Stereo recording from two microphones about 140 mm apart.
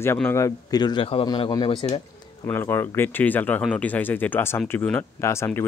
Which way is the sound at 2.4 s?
15° left (ahead or behind).